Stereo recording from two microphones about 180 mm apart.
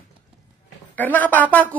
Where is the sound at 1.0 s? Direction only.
10° left (ahead or behind).